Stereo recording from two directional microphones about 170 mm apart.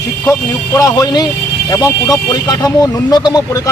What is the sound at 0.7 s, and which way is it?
A man's voice, 20° left (ahead or behind).